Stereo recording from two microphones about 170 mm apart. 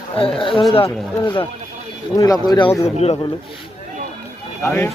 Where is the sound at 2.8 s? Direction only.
40° left (ahead or behind).